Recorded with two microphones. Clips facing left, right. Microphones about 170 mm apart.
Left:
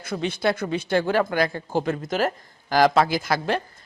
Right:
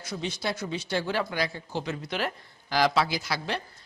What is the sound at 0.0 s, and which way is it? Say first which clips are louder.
Speech: left 8 dB; 55° left (ahead or behind).